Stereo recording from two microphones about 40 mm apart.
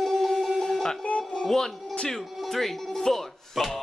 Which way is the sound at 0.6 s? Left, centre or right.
Centre.